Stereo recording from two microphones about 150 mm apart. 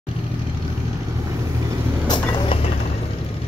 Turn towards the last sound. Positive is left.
turn(degrees=30)  # may be behind; listen again after turning